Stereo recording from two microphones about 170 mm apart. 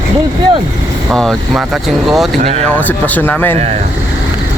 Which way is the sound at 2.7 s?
10° left (ahead or behind).